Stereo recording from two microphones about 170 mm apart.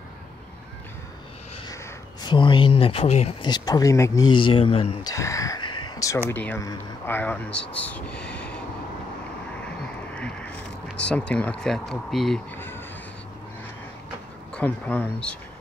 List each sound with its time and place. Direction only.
2.2 s speech: 30° left (ahead or behind)
3.4 s speech: 25° left (ahead or behind)
5.0 s speech: 20° left (ahead or behind)
10.1 s a sound: 5° left (ahead or behind)
11.0 s speech: 5° left (ahead or behind)
12.5 s speech: 10° left (ahead or behind)
14.5 s speech: 10° left (ahead or behind)